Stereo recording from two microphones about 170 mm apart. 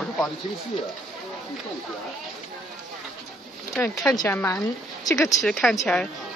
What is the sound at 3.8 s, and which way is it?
A woman's voice, 10° left (ahead or behind).